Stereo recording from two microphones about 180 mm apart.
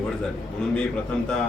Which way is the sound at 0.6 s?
5° left (ahead or behind).